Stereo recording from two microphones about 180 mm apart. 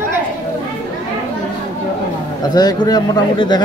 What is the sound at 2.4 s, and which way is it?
Speech, 20° left (ahead or behind).